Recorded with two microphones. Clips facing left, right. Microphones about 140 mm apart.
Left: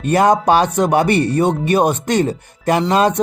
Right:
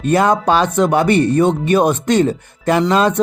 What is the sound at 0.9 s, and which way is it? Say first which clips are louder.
Speech: right 2 dB; 40° left (ahead or behind).